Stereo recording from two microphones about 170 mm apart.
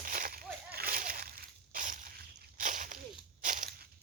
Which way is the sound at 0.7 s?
60° right (ahead or behind).